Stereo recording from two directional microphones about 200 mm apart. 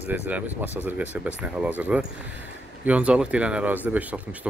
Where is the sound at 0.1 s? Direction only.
10° right (ahead or behind).